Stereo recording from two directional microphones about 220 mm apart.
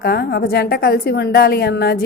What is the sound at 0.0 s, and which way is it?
A woman's voice, 45° left (ahead or behind).